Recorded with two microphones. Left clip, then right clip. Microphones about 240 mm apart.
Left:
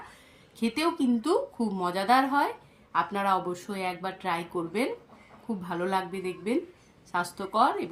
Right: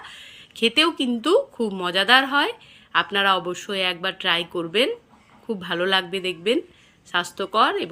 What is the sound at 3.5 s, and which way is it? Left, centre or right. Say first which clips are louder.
Speech: right 8 dB; centre.